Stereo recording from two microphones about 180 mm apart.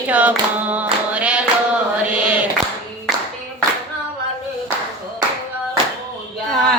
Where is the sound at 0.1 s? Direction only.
10° right (ahead or behind).